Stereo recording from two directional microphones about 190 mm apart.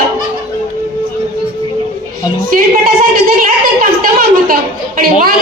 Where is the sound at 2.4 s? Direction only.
45° right (ahead or behind).